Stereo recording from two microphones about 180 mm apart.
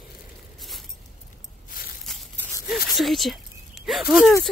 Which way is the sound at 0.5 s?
Centre (ahead or behind).